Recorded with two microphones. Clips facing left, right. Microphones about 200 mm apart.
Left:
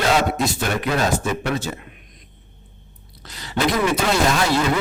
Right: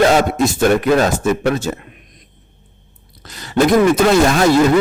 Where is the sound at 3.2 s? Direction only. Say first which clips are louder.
Right 7 dB; 50° right (ahead or behind).